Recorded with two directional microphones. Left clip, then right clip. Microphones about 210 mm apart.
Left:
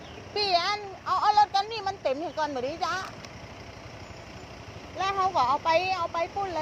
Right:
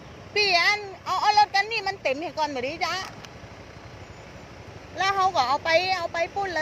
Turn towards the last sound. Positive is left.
turn(degrees=-10)  # may be behind; listen again after turning